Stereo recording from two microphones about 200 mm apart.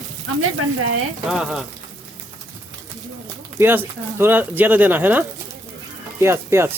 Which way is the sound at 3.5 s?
10° right (ahead or behind).